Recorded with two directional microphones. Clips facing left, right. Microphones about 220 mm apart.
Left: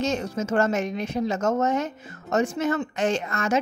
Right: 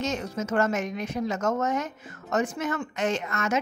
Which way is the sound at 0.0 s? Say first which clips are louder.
Left 4 dB; 30° left (ahead or behind).